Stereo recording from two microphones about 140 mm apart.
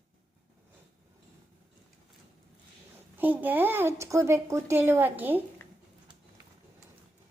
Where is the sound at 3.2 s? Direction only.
15° right (ahead or behind).